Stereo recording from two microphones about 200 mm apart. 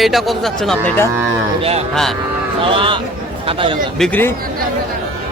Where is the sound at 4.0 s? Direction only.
5° left (ahead or behind).